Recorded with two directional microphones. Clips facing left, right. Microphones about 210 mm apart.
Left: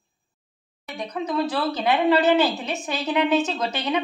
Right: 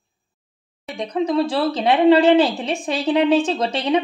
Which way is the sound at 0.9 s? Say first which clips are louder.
Right 6 dB; 30° right (ahead or behind).